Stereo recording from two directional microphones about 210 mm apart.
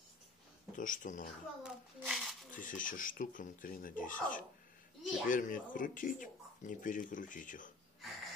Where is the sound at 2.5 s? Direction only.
40° left (ahead or behind).